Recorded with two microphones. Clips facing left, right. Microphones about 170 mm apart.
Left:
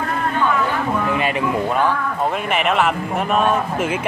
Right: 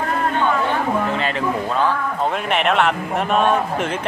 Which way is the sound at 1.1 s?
15° left (ahead or behind).